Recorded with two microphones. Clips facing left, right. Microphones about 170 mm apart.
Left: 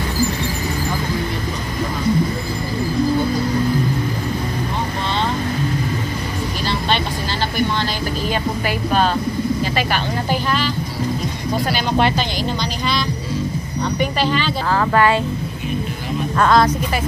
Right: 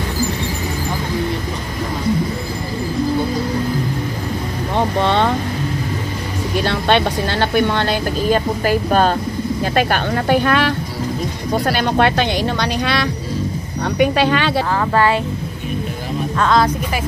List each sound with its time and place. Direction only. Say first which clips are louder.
4.7 s vehicle: right 10 dB; 65° right (ahead or behind)
6.6 s speech: right 6 dB; 60° right (ahead or behind)
8.6 s speech: right 4 dB; 45° right (ahead or behind); by 14.5 s 60° right (ahead or behind)
14.7 s speech: left 1 dB; 15° right (ahead or behind)
16.3 s speech: left 1 dB; 5° left (ahead or behind)